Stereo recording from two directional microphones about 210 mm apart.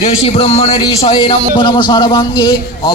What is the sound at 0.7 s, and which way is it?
A man's voice, 15° left (ahead or behind).